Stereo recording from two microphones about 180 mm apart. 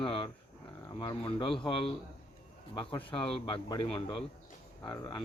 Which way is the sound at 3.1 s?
30° left (ahead or behind).